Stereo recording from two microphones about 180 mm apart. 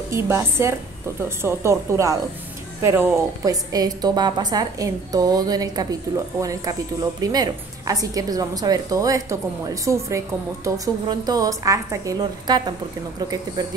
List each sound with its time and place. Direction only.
0.1 s a woman's voice: 15° right (ahead or behind)